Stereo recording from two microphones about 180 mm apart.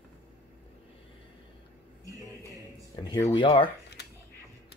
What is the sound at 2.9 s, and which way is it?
Speech, 20° left (ahead or behind).